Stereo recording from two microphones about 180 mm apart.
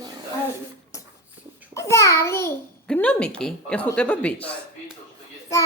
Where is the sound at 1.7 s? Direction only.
15° left (ahead or behind).